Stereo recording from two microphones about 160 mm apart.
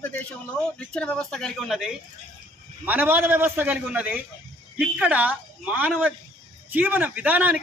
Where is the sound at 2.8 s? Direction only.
10° right (ahead or behind).